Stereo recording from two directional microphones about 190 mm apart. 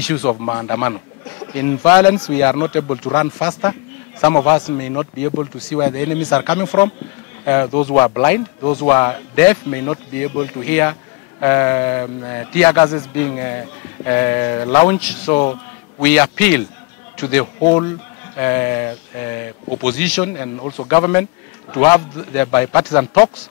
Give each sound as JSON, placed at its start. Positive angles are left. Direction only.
{"t": 0.0, "sound": "speech", "side_deg": 10}
{"t": 16.0, "sound": "a man's voice", "side_deg": 10}
{"t": 17.6, "sound": "speech", "side_deg": 25}
{"t": 20.6, "sound": "speech", "side_deg": 25}